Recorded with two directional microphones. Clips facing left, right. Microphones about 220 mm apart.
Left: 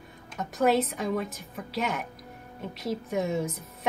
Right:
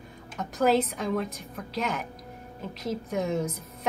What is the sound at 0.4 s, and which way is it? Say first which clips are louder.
Speech: even; centre (ahead or behind).